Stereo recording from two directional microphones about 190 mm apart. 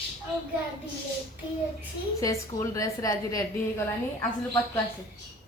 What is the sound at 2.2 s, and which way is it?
Speech, 15° left (ahead or behind).